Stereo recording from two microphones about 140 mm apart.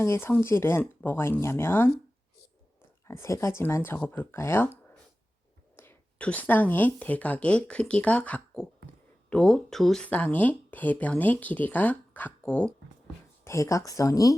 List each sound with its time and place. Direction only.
0.0 s speech: 15° left (ahead or behind)
3.1 s speech: 20° left (ahead or behind)
5.7 s speech: 15° left (ahead or behind)
13.4 s speech: 20° left (ahead or behind)